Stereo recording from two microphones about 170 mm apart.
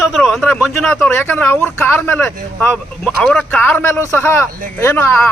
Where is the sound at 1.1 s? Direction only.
10° left (ahead or behind).